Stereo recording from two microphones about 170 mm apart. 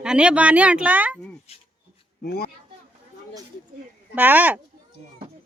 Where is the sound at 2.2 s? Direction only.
65° left (ahead or behind).